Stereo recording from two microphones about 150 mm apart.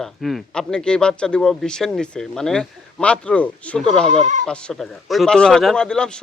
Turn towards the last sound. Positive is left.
turn(degrees=5)  # may be behind; listen again after turning